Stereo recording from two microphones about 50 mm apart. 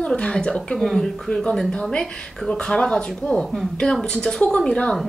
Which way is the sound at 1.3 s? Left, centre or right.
Centre.